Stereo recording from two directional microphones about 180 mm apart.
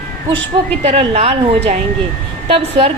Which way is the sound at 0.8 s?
35° right (ahead or behind).